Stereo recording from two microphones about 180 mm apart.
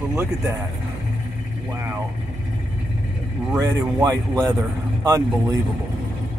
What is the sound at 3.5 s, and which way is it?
Speech, 20° right (ahead or behind).